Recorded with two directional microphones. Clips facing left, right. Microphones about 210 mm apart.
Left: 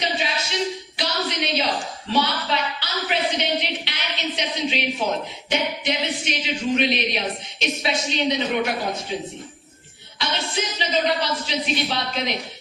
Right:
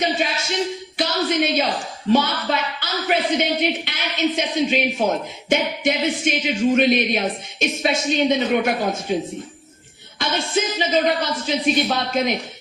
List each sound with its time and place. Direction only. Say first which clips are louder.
0.9 s a woman's voice: right 7 dB; 50° right (ahead or behind)
10.2 s a woman's voice: right 5 dB; 50° right (ahead or behind)